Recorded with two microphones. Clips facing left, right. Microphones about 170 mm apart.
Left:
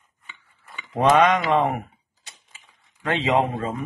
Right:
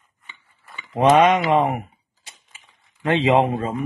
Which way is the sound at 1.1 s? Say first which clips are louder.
Right 3 dB; 20° right (ahead or behind).